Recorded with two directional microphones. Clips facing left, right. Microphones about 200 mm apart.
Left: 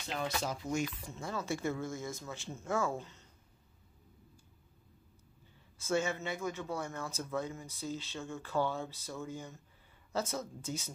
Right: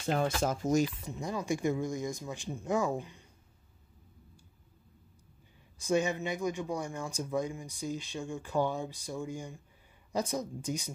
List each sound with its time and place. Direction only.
0.0 s speech: 50° right (ahead or behind)
1.0 s speech: 15° right (ahead or behind)
5.8 s speech: 15° right (ahead or behind)